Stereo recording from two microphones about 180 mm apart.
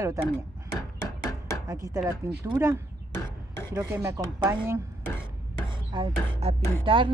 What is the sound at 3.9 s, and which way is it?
Speech, 15° right (ahead or behind).